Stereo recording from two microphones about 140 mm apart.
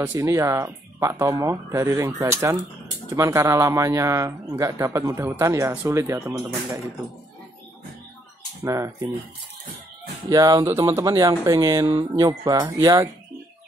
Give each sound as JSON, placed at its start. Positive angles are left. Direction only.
{"t": 0.0, "sound": "a man's voice", "side_deg": -20}
{"t": 8.6, "sound": "a man's voice", "side_deg": -20}
{"t": 10.3, "sound": "a man's voice", "side_deg": -25}